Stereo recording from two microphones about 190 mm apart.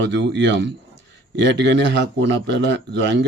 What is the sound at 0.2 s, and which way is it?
Speech, 65° right (ahead or behind).